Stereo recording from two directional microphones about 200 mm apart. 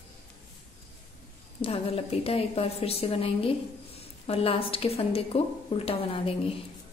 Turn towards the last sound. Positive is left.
turn(degrees=30)  # may be behind; listen again after turning